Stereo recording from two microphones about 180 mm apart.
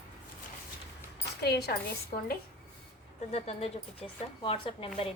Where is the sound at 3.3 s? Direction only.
35° left (ahead or behind).